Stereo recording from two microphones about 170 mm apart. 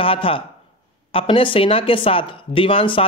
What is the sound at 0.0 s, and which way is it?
A man's voice, 30° left (ahead or behind).